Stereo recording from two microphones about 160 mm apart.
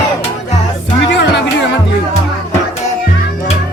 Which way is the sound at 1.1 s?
90° left.